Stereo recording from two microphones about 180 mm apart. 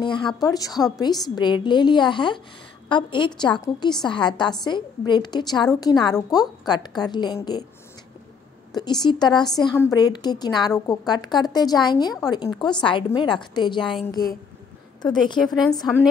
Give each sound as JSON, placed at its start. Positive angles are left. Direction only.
{"t": 0.0, "sound": "a woman's voice", "side_deg": 25}
{"t": 8.7, "sound": "a woman's voice", "side_deg": 25}
{"t": 15.4, "sound": "a woman's voice", "side_deg": 0}